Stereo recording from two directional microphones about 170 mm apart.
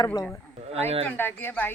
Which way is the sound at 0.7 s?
35° right (ahead or behind).